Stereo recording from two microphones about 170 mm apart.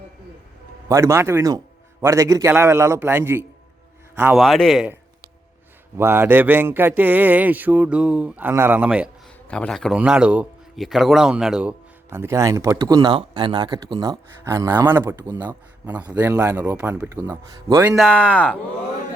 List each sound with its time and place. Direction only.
0.9 s a man's voice: 15° right (ahead or behind)
4.4 s a man's voice: centre (ahead or behind)
6.0 s speech: 10° right (ahead or behind)
9.5 s a man's voice: 5° left (ahead or behind)
12.1 s speech: 15° right (ahead or behind)
15.3 s speech: 25° right (ahead or behind)
15.9 s speech: 10° right (ahead or behind)
17.9 s a man's voice: 5° left (ahead or behind)